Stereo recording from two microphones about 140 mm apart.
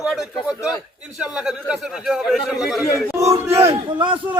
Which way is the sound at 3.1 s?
20° right (ahead or behind).